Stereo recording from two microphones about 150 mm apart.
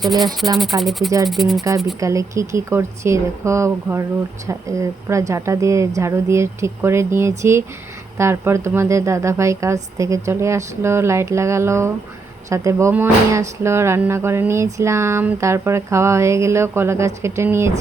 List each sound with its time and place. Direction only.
0.0 s speech: centre (ahead or behind)
2.0 s speech: 20° right (ahead or behind)
13.6 s a sound: 20° right (ahead or behind)